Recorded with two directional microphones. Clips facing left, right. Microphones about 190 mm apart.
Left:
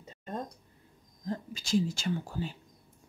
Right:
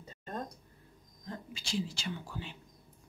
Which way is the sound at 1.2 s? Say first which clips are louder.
Left 7 dB; 40° left (ahead or behind).